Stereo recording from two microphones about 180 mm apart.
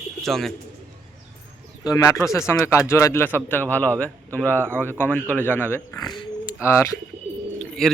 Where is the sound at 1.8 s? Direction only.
20° left (ahead or behind).